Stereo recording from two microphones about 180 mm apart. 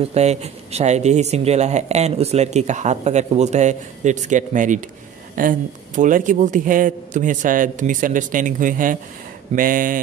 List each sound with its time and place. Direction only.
0.1 s a man's voice: 35° right (ahead or behind)